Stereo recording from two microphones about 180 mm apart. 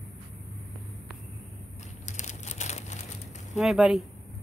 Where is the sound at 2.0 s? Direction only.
40° left (ahead or behind).